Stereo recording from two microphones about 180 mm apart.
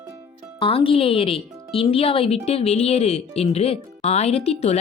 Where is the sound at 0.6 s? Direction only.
30° left (ahead or behind).